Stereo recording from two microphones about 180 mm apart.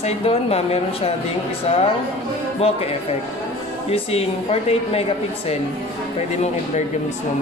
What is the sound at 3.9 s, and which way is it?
Speech, 35° left (ahead or behind).